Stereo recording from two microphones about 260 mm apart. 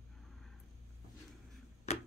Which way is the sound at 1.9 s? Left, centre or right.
Left.